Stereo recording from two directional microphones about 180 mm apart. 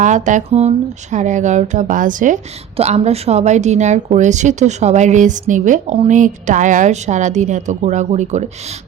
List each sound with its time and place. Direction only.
0.0 s a woman's voice: 45° right (ahead or behind)